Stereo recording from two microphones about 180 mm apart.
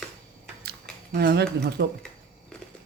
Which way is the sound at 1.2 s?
65° right (ahead or behind).